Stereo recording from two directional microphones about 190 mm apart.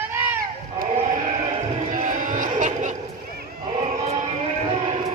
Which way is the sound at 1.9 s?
40° right (ahead or behind).